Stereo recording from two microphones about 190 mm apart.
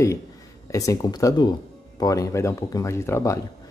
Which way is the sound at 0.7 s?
15° left (ahead or behind).